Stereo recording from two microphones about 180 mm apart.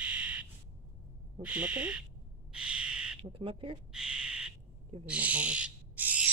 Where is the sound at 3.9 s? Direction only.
5° right (ahead or behind).